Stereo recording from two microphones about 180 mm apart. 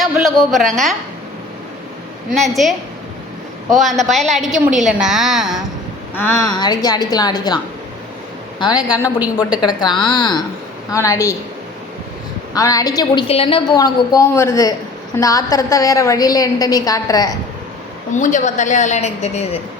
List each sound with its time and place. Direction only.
0.0 s a woman's voice: centre (ahead or behind)
3.8 s a woman's voice: centre (ahead or behind)
6.1 s a woman's voice: 15° left (ahead or behind)
12.5 s a woman's voice: 20° left (ahead or behind)
13.7 s a woman's voice: 20° left (ahead or behind)
18.2 s a woman's voice: 45° left (ahead or behind)